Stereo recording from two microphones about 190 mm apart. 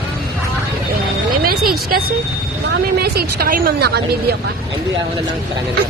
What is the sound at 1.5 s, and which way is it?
A woman's voice, 50° right (ahead or behind).